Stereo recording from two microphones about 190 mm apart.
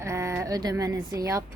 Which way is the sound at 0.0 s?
15° right (ahead or behind).